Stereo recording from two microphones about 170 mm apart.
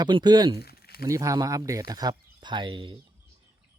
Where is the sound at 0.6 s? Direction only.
65° left (ahead or behind).